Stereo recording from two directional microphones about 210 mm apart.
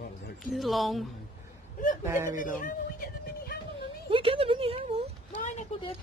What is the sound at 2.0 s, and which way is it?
Speech, 10° right (ahead or behind).